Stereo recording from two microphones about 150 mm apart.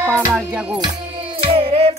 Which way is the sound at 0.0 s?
20° right (ahead or behind).